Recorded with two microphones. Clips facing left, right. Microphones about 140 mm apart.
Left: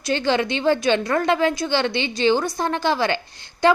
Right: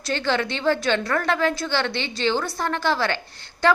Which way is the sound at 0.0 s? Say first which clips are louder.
Left 3 dB; 15° left (ahead or behind).